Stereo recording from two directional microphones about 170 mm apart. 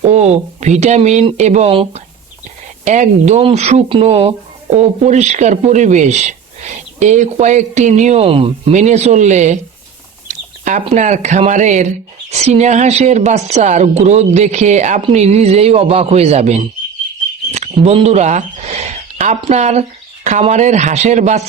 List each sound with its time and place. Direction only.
0.0 s speech: 40° right (ahead or behind)
2.8 s speech: 45° right (ahead or behind)
8.7 s a woman's voice: 45° right (ahead or behind)